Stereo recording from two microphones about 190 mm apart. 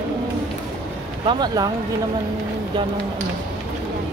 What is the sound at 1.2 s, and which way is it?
Speech, 20° right (ahead or behind).